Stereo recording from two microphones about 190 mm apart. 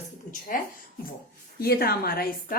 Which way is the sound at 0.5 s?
45° left (ahead or behind).